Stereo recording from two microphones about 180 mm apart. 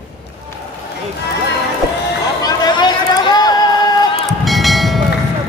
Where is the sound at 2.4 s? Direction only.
25° left (ahead or behind).